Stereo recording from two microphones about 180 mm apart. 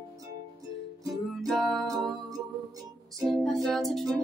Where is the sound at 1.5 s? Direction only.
Centre (ahead or behind).